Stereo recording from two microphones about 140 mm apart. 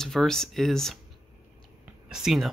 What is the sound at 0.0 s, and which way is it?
Speech, 5° left (ahead or behind).